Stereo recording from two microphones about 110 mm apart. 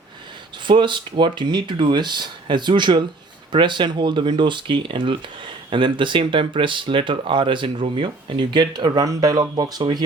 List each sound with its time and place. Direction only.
0.6 s speech: 45° right (ahead or behind)